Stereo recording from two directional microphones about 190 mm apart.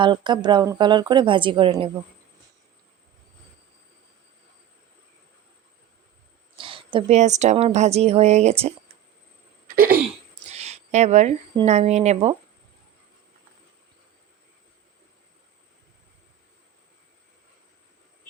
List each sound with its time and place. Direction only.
0.0 s speech: 25° right (ahead or behind)
6.6 s a woman's voice: 25° right (ahead or behind)
9.6 s throat clearing: 50° right (ahead or behind)
10.5 s a sound: 35° right (ahead or behind)
11.6 s a woman's voice: 35° right (ahead or behind)